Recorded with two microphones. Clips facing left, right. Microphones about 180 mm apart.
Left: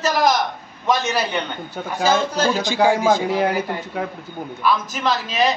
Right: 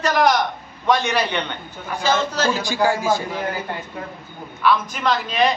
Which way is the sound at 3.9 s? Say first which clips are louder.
Left 6 dB; 90° left.